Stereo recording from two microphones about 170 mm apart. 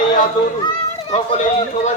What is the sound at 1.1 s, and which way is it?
Speech, 40° left (ahead or behind).